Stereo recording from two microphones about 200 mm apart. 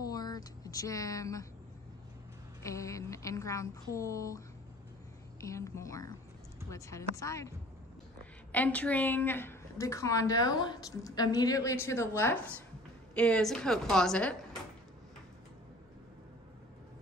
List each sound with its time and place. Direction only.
0.0 s a sound: 20° left (ahead or behind)
2.6 s a woman's voice: 15° left (ahead or behind)
5.5 s a woman's voice: 15° left (ahead or behind)